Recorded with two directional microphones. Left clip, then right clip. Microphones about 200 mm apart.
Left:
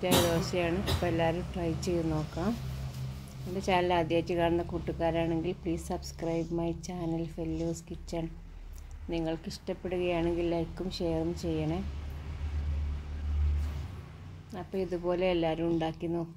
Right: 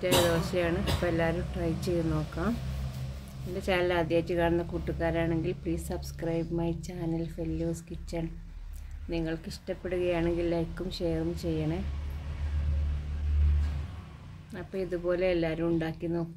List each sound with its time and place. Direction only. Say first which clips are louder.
0.0 s speech: right 2 dB; 10° left (ahead or behind)
3.6 s speech: even; 10° left (ahead or behind)
14.5 s speech: even; 10° left (ahead or behind)